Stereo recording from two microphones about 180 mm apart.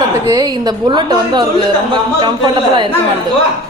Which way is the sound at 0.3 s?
20° right (ahead or behind).